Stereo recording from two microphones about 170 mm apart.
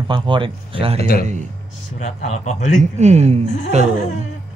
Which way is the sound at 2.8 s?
40° right (ahead or behind).